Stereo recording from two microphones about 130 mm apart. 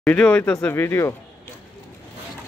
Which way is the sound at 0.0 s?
10° left (ahead or behind).